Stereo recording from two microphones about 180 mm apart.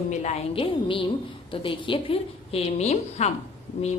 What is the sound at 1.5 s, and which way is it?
A woman's voice, 30° left (ahead or behind).